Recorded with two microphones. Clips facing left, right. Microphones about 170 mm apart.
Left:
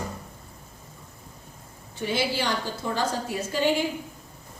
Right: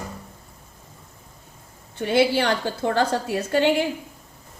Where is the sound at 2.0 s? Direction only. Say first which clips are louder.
Right 7 dB; 60° right (ahead or behind).